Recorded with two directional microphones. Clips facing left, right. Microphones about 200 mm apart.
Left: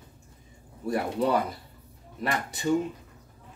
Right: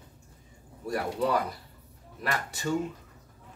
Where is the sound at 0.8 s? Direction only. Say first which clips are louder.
Left 2 dB; 25° left (ahead or behind).